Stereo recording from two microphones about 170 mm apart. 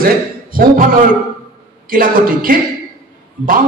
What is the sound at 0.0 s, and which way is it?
Speech, 55° right (ahead or behind).